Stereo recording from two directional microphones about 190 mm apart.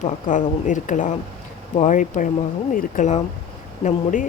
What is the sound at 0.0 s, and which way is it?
Speech, 40° left (ahead or behind).